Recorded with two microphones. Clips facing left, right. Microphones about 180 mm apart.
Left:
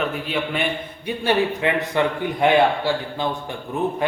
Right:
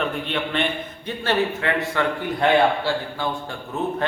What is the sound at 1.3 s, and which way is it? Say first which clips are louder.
A man's voice: left 2 dB; 20° left (ahead or behind).